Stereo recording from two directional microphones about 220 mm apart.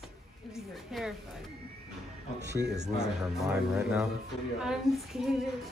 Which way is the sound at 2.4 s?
50° right (ahead or behind).